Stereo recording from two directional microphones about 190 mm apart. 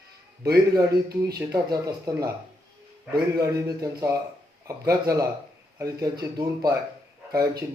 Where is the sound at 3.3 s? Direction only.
20° right (ahead or behind).